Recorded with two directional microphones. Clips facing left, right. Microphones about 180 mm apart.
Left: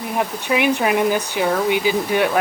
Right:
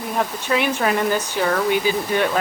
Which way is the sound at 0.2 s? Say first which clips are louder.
Left 2 dB; 15° left (ahead or behind).